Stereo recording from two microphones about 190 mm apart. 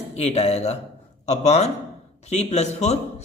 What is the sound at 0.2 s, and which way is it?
A woman's voice, 35° left (ahead or behind).